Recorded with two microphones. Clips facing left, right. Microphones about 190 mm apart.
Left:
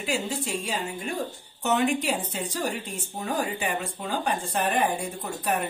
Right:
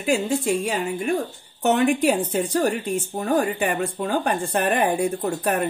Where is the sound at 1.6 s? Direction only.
50° right (ahead or behind).